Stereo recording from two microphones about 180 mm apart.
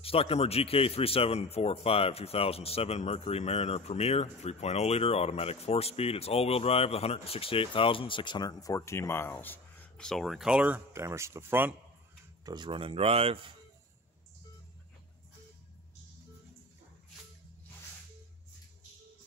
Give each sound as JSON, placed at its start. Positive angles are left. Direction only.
{"t": 0.0, "sound": "a man's voice", "side_deg": 30}
{"t": 12.4, "sound": "speech", "side_deg": -25}